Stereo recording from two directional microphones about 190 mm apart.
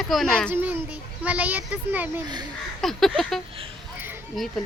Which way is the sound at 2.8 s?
Centre (ahead or behind).